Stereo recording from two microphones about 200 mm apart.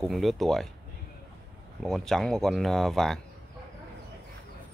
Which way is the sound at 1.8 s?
Centre (ahead or behind).